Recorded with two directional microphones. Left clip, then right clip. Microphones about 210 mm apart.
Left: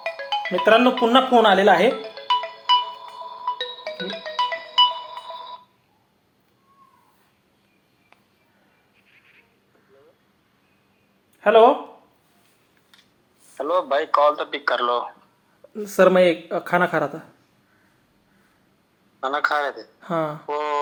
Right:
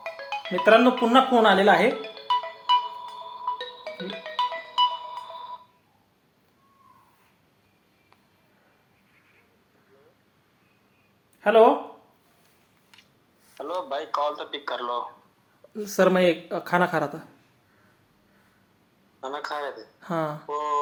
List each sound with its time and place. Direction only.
0.0 s speech: centre (ahead or behind)
1.9 s music: 10° right (ahead or behind)
11.3 s a sound: 5° right (ahead or behind)
13.6 s a man's voice: 25° left (ahead or behind)
15.7 s speech: 5° right (ahead or behind)
19.2 s a man's voice: 25° left (ahead or behind)
20.0 s speech: 5° right (ahead or behind)
20.5 s a sound: 25° left (ahead or behind)